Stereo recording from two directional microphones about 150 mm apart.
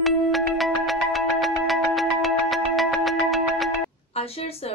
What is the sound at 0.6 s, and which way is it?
Music, centre (ahead or behind).